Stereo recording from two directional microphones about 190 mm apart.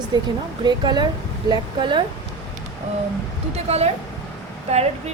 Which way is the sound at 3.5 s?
35° right (ahead or behind).